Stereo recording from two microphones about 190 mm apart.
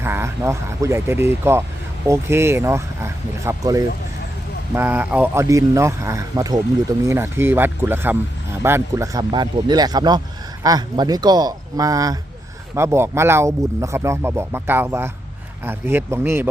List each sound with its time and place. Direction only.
0.0 s speech: 15° right (ahead or behind)